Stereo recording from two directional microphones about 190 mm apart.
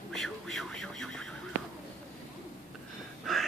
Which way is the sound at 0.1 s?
Centre (ahead or behind).